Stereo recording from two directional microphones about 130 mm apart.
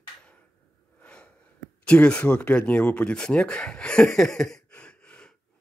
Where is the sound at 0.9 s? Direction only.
10° left (ahead or behind).